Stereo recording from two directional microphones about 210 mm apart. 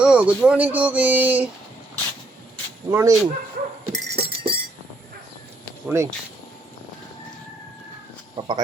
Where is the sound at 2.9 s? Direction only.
15° right (ahead or behind).